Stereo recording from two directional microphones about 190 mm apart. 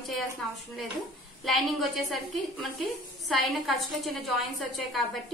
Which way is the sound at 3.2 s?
Centre (ahead or behind).